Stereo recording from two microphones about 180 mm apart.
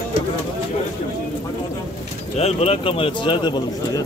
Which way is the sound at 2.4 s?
35° left (ahead or behind).